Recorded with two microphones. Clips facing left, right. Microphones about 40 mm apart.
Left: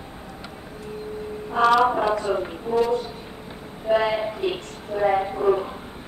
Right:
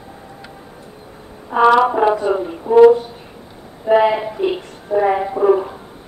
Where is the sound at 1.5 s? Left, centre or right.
Centre.